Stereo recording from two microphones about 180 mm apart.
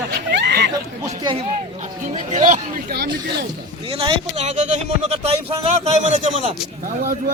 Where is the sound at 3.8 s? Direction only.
30° right (ahead or behind).